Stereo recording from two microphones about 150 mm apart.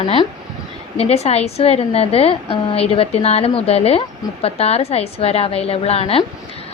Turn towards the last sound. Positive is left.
turn(degrees=40)  # may be behind; listen again after turning